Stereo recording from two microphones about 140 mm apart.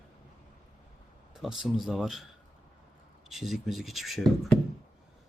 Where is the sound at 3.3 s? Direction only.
Centre (ahead or behind).